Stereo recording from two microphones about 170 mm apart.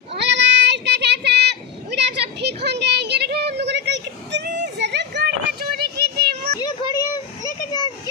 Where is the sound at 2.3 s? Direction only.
75° right (ahead or behind).